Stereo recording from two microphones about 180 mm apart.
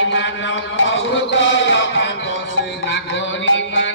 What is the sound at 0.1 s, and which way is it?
Chant, 90° left.